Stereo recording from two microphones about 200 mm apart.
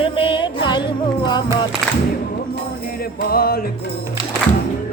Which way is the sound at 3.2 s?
50° left (ahead or behind).